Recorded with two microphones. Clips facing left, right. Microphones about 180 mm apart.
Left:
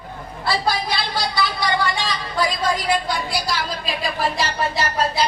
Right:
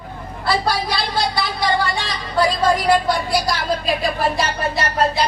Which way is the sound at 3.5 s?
55° right (ahead or behind).